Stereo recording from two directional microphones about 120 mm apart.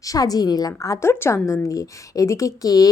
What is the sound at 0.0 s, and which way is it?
A woman's voice, 30° left (ahead or behind).